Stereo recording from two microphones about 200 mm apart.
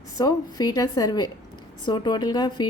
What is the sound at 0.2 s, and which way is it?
Speech, 20° left (ahead or behind).